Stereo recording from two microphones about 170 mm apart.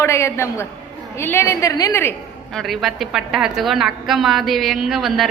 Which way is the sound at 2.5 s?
Centre (ahead or behind).